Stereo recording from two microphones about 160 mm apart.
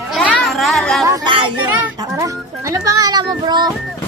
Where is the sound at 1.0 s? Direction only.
25° right (ahead or behind).